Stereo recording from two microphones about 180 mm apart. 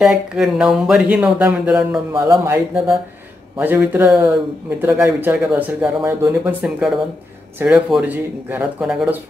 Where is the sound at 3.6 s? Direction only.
10° right (ahead or behind).